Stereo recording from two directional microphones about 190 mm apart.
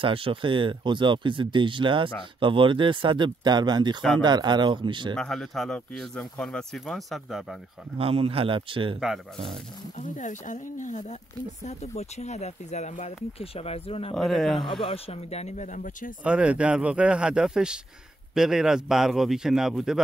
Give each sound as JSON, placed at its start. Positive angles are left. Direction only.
{"t": 0.0, "sound": "speech", "side_deg": -30}
{"t": 5.1, "sound": "speech", "side_deg": 5}
{"t": 8.0, "sound": "speech", "side_deg": -30}
{"t": 9.0, "sound": "speech", "side_deg": 0}
{"t": 9.9, "sound": "speech", "side_deg": 40}
{"t": 14.1, "sound": "speech", "side_deg": 0}
{"t": 14.7, "sound": "speech", "side_deg": 30}
{"t": 16.3, "sound": "speech", "side_deg": -5}